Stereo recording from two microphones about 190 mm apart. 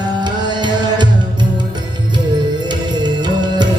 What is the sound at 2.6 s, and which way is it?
Music, 25° right (ahead or behind).